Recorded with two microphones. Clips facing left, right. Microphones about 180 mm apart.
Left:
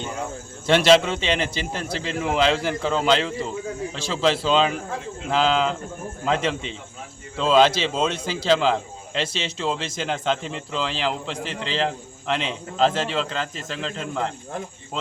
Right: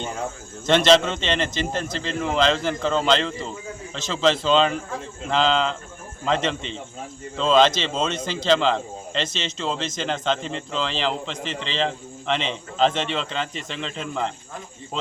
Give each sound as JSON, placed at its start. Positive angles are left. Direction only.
{"t": 0.7, "sound": "a man's voice", "side_deg": 10}